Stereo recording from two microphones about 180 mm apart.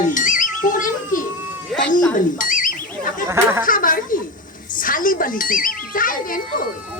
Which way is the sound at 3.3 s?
15° right (ahead or behind).